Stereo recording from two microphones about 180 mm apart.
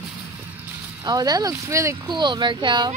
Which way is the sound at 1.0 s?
20° right (ahead or behind).